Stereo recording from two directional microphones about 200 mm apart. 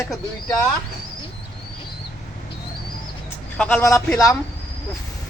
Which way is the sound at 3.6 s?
10° left (ahead or behind).